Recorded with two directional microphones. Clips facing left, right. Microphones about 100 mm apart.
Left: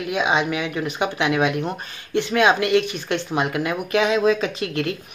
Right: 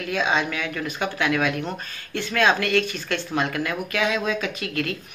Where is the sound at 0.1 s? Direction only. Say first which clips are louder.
Left 2 dB; 15° left (ahead or behind).